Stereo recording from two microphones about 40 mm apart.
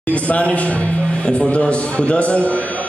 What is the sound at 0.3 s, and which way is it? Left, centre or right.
A man's voice, left.